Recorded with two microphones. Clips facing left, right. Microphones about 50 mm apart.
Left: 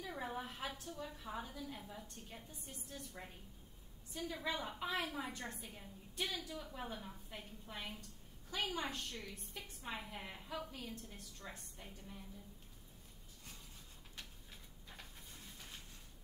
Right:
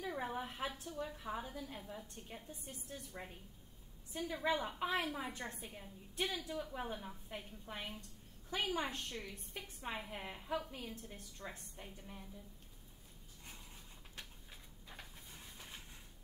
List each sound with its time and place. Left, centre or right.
0.0 s a woman's voice: centre
6.5 s a woman's voice: centre
14.1 s a sound: centre